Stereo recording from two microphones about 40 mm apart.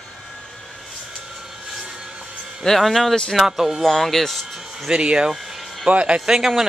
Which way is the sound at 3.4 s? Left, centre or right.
Centre.